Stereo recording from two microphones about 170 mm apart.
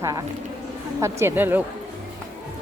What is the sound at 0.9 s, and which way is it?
Speech, 15° right (ahead or behind).